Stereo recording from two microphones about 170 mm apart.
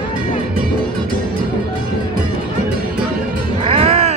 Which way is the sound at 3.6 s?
35° right (ahead or behind).